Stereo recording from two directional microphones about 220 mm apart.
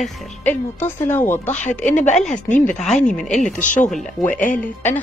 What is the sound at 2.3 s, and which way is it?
Speech, 35° left (ahead or behind).